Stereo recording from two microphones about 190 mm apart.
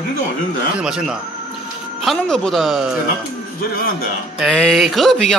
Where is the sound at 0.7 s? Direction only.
5° right (ahead or behind).